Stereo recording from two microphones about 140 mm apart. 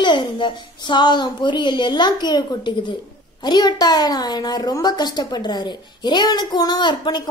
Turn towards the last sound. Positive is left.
turn(degrees=30)  # may be behind; listen again after turning